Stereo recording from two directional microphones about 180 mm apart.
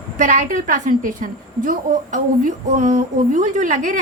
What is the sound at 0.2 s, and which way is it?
A woman's voice, 45° right (ahead or behind).